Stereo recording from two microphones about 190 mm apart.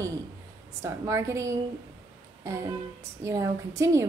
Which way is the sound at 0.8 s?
15° right (ahead or behind).